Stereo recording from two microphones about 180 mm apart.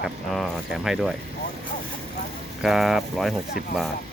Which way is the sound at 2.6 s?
Centre (ahead or behind).